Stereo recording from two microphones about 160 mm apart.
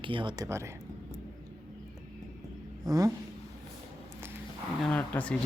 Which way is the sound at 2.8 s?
25° right (ahead or behind).